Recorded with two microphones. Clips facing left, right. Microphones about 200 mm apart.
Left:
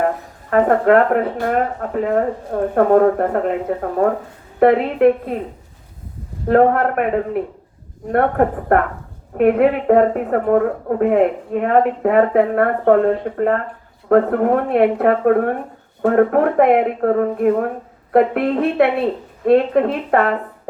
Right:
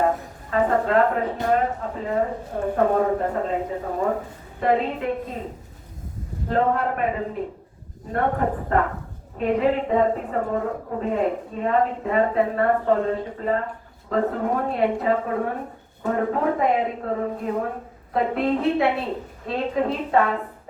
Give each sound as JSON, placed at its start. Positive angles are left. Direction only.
{"t": 0.5, "sound": "a woman's voice", "side_deg": 65}
{"t": 4.6, "sound": "speech", "side_deg": 70}
{"t": 6.5, "sound": "a woman's voice", "side_deg": 65}